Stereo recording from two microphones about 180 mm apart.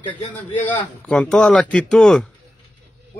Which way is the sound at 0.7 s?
5° left (ahead or behind).